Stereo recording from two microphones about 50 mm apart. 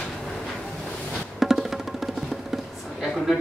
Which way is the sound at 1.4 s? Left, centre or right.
Centre.